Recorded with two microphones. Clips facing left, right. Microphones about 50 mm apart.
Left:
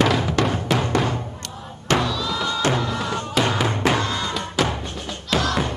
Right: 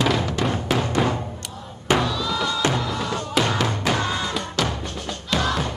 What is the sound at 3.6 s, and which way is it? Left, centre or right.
Music, left.